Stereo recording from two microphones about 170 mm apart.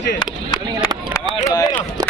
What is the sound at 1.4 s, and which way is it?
Speech, 20° left (ahead or behind).